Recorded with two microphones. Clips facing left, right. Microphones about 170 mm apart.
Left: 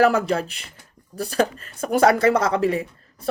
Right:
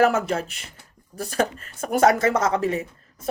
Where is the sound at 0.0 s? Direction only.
35° left (ahead or behind).